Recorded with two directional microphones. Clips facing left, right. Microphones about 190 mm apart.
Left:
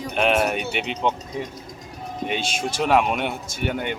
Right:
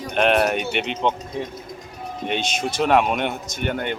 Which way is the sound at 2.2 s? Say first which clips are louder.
Right 1 dB; 5° left (ahead or behind).